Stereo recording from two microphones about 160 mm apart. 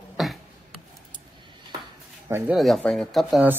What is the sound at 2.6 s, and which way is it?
Speech, centre (ahead or behind).